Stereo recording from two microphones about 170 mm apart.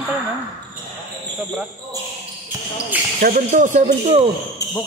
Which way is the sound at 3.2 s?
50° right (ahead or behind).